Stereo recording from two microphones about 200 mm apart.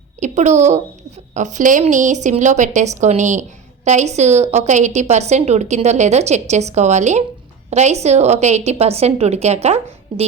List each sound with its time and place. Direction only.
0.2 s a woman's voice: 35° right (ahead or behind)